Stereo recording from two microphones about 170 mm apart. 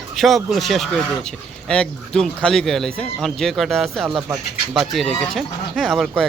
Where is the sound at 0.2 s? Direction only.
Centre (ahead or behind).